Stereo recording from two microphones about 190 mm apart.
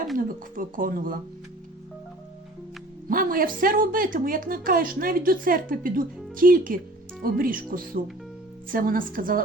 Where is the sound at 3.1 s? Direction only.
45° right (ahead or behind).